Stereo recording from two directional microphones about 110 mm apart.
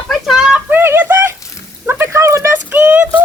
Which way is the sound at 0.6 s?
20° right (ahead or behind).